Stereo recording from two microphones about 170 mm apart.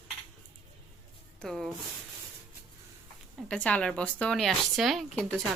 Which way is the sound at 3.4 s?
5° left (ahead or behind).